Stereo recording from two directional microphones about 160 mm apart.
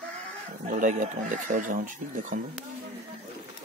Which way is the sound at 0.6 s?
55° right (ahead or behind).